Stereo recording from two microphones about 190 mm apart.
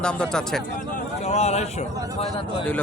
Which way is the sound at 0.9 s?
35° left (ahead or behind).